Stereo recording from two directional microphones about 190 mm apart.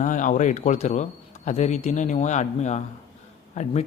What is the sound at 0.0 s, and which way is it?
A man's voice, 40° left (ahead or behind).